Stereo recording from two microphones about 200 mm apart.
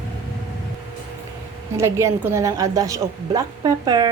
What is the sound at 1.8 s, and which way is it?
A woman's voice, 15° right (ahead or behind).